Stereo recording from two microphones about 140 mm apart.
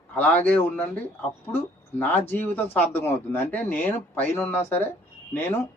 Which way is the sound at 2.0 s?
15° left (ahead or behind).